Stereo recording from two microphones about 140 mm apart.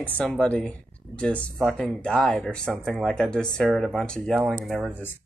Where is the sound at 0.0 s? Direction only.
10° left (ahead or behind).